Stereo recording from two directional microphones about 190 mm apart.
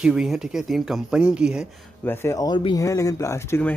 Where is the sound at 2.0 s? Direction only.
10° left (ahead or behind).